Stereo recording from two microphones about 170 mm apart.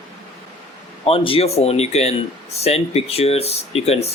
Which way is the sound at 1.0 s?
30° left (ahead or behind).